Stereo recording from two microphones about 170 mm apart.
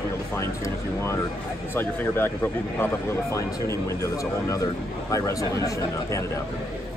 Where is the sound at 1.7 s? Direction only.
15° left (ahead or behind).